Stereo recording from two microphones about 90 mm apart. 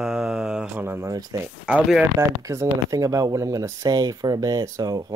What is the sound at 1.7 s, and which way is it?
Speech, 10° right (ahead or behind).